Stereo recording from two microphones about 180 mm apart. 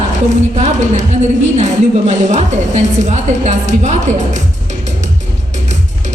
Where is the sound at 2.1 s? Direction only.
40° right (ahead or behind).